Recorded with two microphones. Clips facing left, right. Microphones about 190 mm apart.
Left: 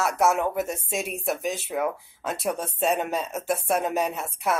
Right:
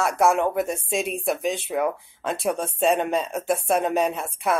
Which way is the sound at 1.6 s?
Centre (ahead or behind).